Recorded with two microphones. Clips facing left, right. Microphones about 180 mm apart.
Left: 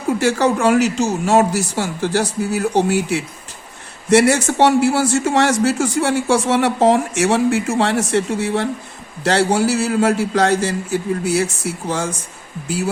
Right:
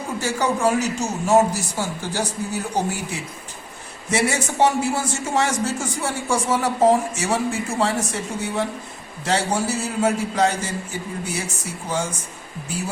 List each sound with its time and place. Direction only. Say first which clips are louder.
0.2 s a man's voice: left 3 dB; 85° left